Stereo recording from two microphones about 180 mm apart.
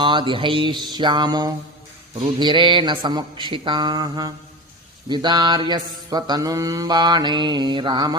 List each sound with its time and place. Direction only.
0.0 s mantra: 25° right (ahead or behind)